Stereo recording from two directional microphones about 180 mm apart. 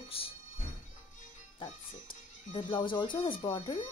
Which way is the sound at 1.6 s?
30° left (ahead or behind).